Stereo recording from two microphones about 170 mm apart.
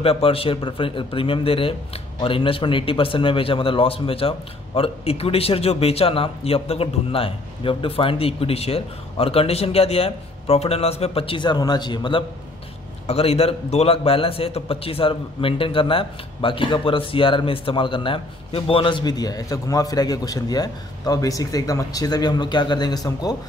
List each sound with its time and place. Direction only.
0.0 s a man's voice: 35° left (ahead or behind)